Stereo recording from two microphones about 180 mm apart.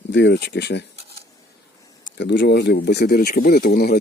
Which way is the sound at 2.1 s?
80° left.